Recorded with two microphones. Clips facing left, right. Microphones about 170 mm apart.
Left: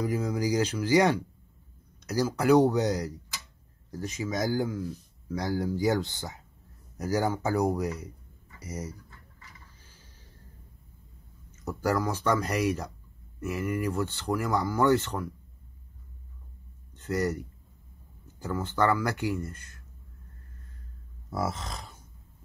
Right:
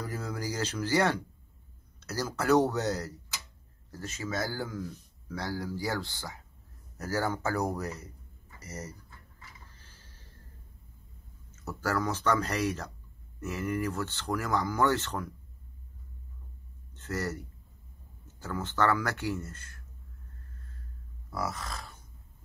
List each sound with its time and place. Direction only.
0.0 s speech: 10° left (ahead or behind)
9.8 s a sound: 10° left (ahead or behind)
11.5 s speech: 15° left (ahead or behind)
16.9 s speech: 10° left (ahead or behind)
21.3 s grunt: 25° left (ahead or behind)